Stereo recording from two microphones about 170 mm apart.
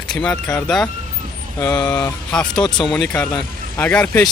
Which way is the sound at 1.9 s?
5° left (ahead or behind).